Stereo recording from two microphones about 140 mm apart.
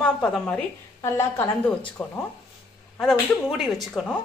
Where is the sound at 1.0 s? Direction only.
20° left (ahead or behind).